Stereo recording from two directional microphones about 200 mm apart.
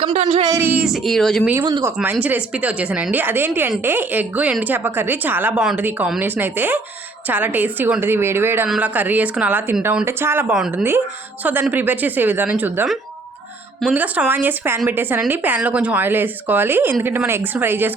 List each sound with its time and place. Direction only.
0.0 s speech: 30° right (ahead or behind)
0.4 s speech: 10° right (ahead or behind)
1.5 s a woman's voice: 15° right (ahead or behind)